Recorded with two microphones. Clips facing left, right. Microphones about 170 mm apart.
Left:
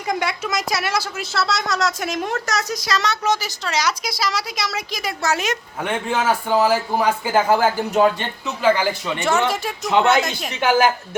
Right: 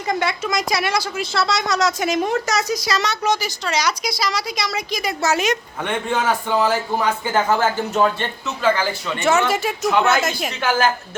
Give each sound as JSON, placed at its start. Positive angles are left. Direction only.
{"t": 0.1, "sound": "a woman's voice", "side_deg": 10}
{"t": 9.2, "sound": "a woman's voice", "side_deg": 0}
{"t": 10.5, "sound": "a man's voice", "side_deg": 20}